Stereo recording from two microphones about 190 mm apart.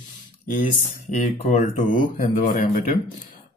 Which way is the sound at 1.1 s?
40° left (ahead or behind).